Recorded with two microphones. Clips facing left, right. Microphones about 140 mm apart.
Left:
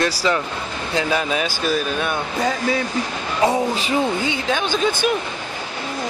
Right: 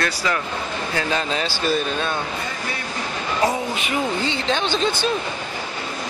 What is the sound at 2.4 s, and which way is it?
Speech, 90° left.